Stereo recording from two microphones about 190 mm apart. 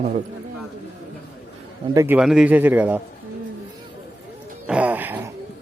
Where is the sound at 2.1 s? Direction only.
5° right (ahead or behind).